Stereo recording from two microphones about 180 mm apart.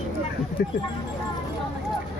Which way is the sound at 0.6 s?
60° left (ahead or behind).